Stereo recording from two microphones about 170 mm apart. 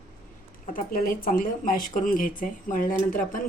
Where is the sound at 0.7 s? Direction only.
55° left (ahead or behind).